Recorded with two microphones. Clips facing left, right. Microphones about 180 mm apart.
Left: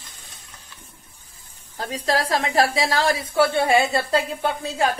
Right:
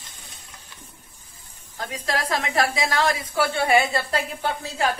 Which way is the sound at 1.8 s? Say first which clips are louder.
Left 4 dB; 30° left (ahead or behind).